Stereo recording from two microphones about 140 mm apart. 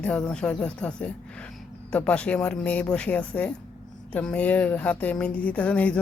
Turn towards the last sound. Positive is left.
turn(degrees=10)  # may be behind; listen again after turning